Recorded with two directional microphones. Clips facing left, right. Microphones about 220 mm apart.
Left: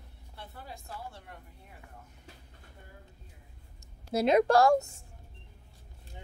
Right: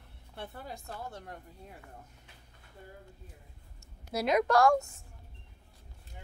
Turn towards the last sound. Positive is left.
turn(degrees=25)  # may be behind; listen again after turning